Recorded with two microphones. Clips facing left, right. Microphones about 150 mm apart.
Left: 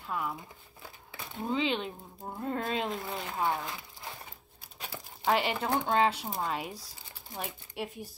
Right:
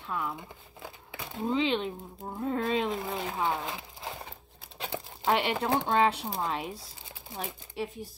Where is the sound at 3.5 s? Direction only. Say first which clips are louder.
Right 2 dB; 25° right (ahead or behind).